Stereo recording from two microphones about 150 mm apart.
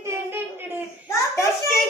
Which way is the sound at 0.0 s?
15° right (ahead or behind).